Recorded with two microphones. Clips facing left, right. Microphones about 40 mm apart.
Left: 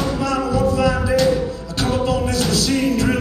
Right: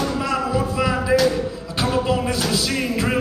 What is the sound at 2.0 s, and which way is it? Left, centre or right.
Music, centre.